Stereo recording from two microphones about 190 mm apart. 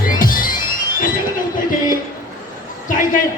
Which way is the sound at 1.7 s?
45° left (ahead or behind).